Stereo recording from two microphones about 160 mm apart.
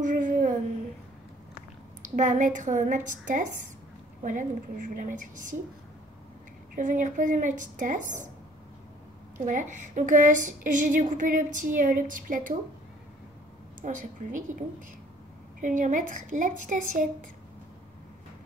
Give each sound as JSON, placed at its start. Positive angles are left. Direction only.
{"t": 0.1, "sound": "a sound", "side_deg": -55}
{"t": 2.0, "sound": "speech", "side_deg": -50}
{"t": 6.7, "sound": "speech", "side_deg": -55}
{"t": 9.4, "sound": "a woman's voice", "side_deg": -55}
{"t": 13.8, "sound": "speech", "side_deg": -55}
{"t": 15.6, "sound": "speech", "side_deg": -55}